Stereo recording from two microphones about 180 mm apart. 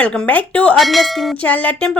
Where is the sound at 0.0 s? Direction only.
5° left (ahead or behind).